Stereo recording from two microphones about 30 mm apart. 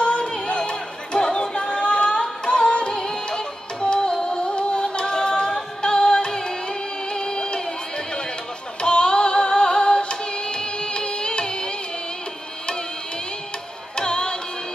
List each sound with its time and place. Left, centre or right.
0.0 s music: left
8.8 s music: left
13.9 s music: left